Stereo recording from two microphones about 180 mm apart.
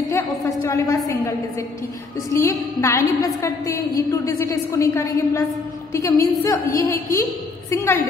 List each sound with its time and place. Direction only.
0.1 s a woman's voice: 15° left (ahead or behind)
2.3 s a woman's voice: 15° left (ahead or behind)